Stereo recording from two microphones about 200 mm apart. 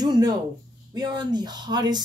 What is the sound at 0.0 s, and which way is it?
Speech, 20° right (ahead or behind).